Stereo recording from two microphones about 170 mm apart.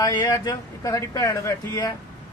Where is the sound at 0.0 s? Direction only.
25° left (ahead or behind).